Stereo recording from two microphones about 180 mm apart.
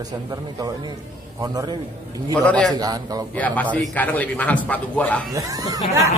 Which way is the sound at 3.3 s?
10° left (ahead or behind).